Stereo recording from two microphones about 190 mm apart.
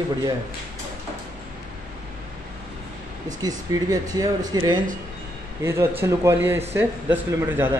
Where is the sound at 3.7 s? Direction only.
20° right (ahead or behind).